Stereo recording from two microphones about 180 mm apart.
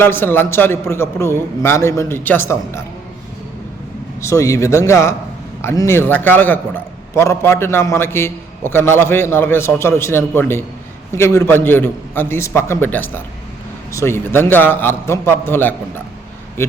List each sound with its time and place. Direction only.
0.0 s a man's voice: 10° left (ahead or behind)
4.3 s a man's voice: 15° left (ahead or behind)